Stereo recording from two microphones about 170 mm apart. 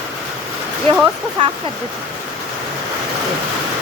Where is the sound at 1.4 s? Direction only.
30° right (ahead or behind).